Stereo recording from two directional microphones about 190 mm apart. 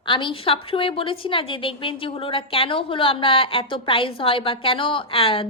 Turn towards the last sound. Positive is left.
turn(degrees=30)  # may be behind; listen again after turning